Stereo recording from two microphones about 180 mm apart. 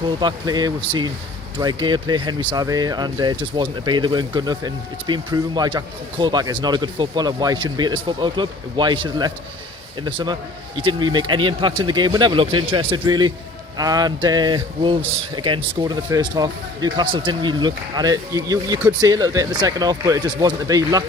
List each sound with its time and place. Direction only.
0.2 s speech: 25° right (ahead or behind)